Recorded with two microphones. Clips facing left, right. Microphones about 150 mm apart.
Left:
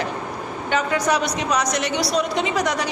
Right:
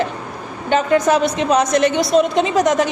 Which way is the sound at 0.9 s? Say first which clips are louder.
Right 8 dB; 45° right (ahead or behind).